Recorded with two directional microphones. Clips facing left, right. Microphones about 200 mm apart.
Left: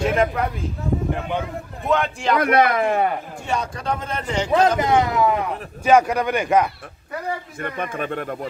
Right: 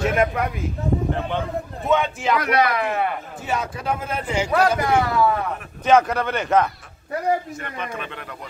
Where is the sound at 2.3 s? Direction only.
50° left (ahead or behind).